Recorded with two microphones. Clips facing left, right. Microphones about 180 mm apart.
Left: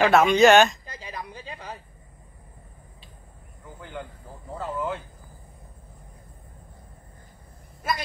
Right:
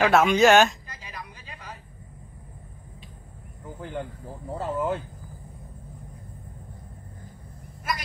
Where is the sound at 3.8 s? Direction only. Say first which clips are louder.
Right 4 dB; 40° right (ahead or behind).